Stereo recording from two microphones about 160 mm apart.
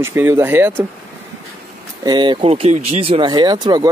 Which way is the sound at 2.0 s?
25° right (ahead or behind).